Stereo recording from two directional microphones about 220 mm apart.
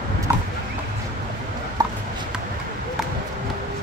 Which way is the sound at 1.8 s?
15° right (ahead or behind).